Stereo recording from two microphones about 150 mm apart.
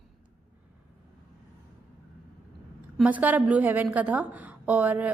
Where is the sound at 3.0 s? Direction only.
10° right (ahead or behind).